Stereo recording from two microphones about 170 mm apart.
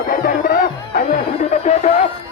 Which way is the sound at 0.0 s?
55° left (ahead or behind).